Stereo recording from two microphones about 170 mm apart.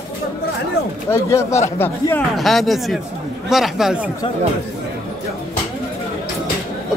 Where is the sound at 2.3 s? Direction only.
Centre (ahead or behind).